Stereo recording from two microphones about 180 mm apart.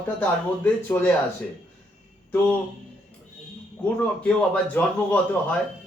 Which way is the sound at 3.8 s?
5° left (ahead or behind).